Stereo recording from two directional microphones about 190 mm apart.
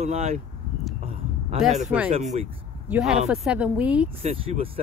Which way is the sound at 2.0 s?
35° right (ahead or behind).